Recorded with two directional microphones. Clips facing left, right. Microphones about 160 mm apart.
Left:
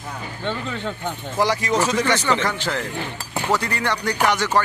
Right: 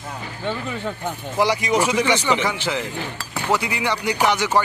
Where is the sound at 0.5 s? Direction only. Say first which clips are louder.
Right 1 dB; 10° right (ahead or behind).